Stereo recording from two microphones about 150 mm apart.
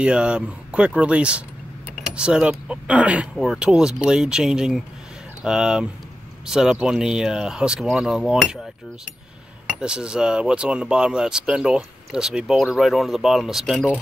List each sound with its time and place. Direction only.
0.0 s speech: 5° right (ahead or behind)
9.8 s speech: 5° right (ahead or behind)